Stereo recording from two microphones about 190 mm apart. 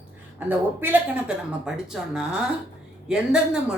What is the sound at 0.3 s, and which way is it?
A woman's voice, 10° right (ahead or behind).